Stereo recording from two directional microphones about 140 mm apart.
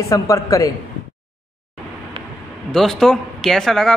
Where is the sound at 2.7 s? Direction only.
5° left (ahead or behind).